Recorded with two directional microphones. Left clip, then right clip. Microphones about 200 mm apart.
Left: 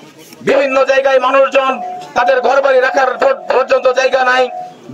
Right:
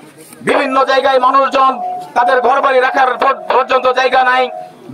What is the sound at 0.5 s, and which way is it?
A man's voice, 40° right (ahead or behind).